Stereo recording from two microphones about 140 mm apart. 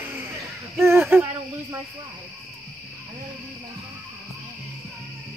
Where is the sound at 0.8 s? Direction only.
20° right (ahead or behind).